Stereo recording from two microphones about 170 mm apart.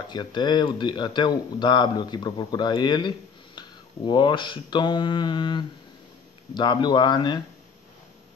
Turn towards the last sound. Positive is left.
turn(degrees=25)  # may be behind; listen again after turning